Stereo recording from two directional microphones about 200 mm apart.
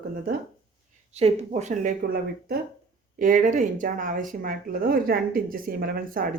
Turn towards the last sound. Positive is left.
turn(degrees=-45)  # may be behind; listen again after turning